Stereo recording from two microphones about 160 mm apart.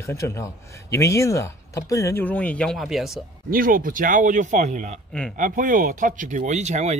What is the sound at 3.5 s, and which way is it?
Speech, 60° right (ahead or behind).